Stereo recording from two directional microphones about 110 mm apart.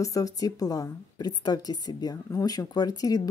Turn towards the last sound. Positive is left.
turn(degrees=35)  # may be behind; listen again after turning